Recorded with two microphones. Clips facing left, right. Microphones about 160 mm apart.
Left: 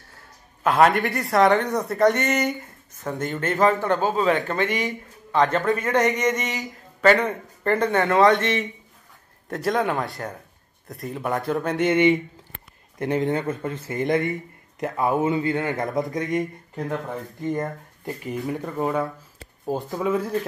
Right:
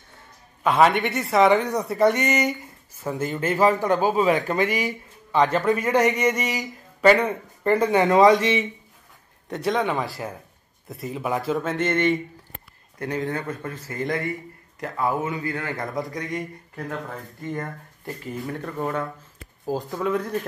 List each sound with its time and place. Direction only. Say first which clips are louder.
0.7 s a man's voice: even; centre (ahead or behind)
11.7 s a sound: left 5 dB; 15° left (ahead or behind)
13.0 s speech: left 4 dB; 20° left (ahead or behind); by 20.2 s 5° left (ahead or behind)